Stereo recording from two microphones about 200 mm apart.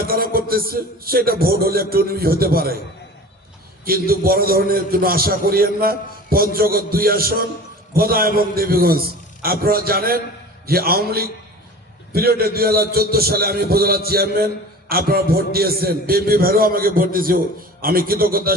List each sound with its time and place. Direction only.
0.0 s a man's voice: 45° right (ahead or behind)
3.8 s a man's voice: 50° right (ahead or behind)